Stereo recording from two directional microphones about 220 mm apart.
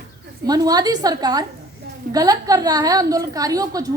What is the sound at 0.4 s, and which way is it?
A woman's voice, 15° right (ahead or behind).